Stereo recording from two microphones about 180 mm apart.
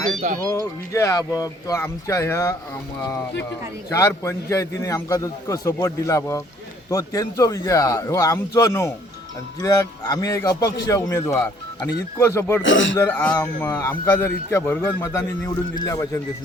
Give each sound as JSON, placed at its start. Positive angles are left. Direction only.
{"t": 0.2, "sound": "speech", "side_deg": -45}
{"t": 0.9, "sound": "a man's voice", "side_deg": 15}
{"t": 12.6, "sound": "speech", "side_deg": 90}
{"t": 13.0, "sound": "a man's voice", "side_deg": 10}